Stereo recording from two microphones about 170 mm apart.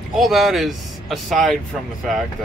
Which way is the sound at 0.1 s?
Centre (ahead or behind).